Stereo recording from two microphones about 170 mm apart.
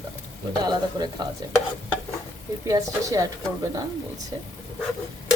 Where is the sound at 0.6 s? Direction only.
25° right (ahead or behind).